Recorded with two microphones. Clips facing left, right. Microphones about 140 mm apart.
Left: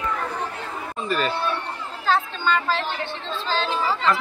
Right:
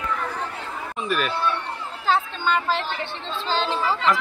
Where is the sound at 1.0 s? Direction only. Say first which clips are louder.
Even; 10° right (ahead or behind).